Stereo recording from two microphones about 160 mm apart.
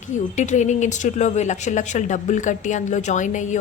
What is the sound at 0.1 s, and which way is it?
A woman's voice, 50° left (ahead or behind).